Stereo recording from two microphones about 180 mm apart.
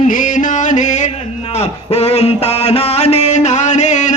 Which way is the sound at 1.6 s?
35° left (ahead or behind).